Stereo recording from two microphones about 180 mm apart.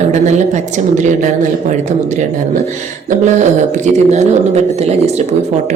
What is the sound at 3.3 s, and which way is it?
A woman's voice, 40° right (ahead or behind).